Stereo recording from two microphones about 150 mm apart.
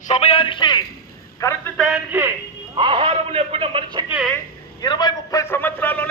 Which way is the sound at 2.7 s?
35° right (ahead or behind).